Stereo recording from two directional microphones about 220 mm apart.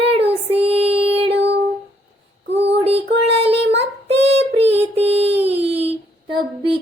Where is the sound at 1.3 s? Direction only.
50° right (ahead or behind).